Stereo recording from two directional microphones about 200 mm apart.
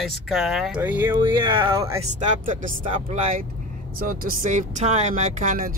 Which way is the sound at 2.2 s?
40° right (ahead or behind).